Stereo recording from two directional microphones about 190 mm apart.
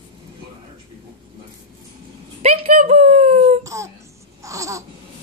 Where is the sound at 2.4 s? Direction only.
35° right (ahead or behind).